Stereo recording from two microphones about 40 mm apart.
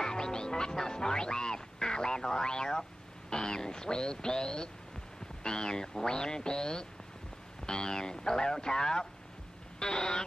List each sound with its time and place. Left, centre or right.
0.0 s music: centre
5.4 s speech: centre